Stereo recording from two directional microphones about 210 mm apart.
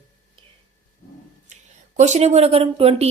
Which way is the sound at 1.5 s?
35° right (ahead or behind).